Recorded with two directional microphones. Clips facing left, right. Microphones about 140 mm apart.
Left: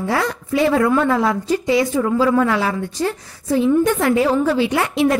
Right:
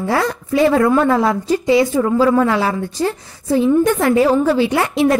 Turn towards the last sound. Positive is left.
turn(degrees=-40)  # may be behind; listen again after turning